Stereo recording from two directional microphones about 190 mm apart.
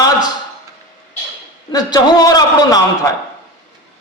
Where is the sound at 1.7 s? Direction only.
20° left (ahead or behind).